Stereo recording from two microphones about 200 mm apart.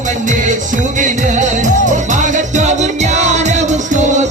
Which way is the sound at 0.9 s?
40° right (ahead or behind).